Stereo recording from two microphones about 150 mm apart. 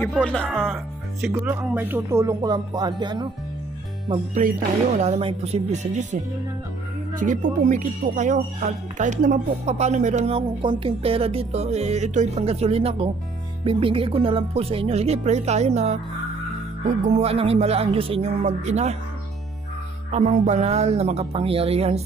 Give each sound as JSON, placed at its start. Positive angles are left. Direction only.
{"t": 0.1, "sound": "speech", "side_deg": 5}
{"t": 1.3, "sound": "music", "side_deg": -20}
{"t": 4.3, "sound": "music", "side_deg": -65}
{"t": 4.9, "sound": "speech", "side_deg": -45}
{"t": 17.2, "sound": "speech", "side_deg": -40}
{"t": 20.1, "sound": "speech", "side_deg": -50}